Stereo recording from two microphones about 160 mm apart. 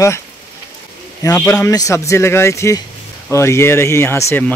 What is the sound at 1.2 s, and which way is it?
Speech, 20° left (ahead or behind).